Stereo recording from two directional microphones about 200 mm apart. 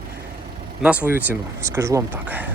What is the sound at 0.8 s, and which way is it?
Speech, 5° right (ahead or behind).